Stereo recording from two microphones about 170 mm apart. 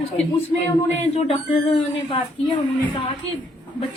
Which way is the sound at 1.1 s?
35° left (ahead or behind).